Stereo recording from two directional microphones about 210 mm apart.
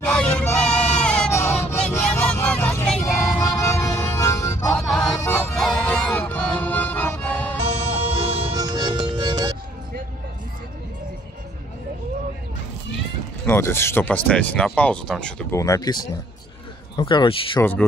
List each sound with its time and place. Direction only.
0.0 s a sound: 5° left (ahead or behind)
4.7 s music: 5° left (ahead or behind)
7.5 s music: 30° right (ahead or behind)
13.5 s speech: 10° left (ahead or behind)
15.6 s a man's voice: 15° left (ahead or behind)